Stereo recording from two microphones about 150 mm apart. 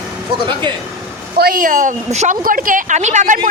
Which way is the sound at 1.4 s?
80° right.